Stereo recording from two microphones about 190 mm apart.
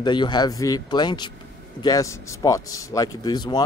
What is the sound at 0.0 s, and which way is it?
A man's voice, 25° left (ahead or behind).